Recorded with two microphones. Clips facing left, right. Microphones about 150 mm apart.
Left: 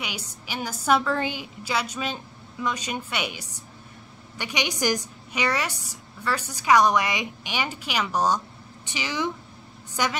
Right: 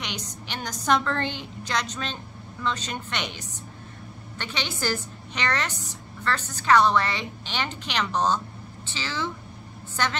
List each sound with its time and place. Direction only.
0.0 s a woman's voice: 5° left (ahead or behind)